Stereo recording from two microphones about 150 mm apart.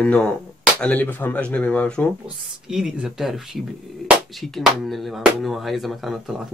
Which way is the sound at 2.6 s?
5° right (ahead or behind).